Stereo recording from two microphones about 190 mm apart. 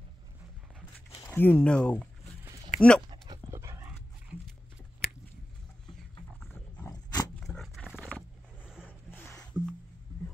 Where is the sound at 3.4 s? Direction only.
15° right (ahead or behind).